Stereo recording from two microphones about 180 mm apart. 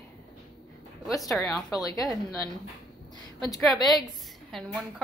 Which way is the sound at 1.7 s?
20° left (ahead or behind).